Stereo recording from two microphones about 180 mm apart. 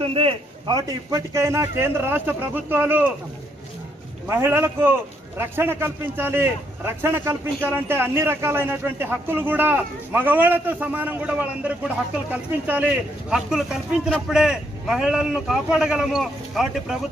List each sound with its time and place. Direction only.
0.0 s speech: 30° right (ahead or behind); by 3.1 s 10° right (ahead or behind)
4.3 s a man's voice: 15° right (ahead or behind)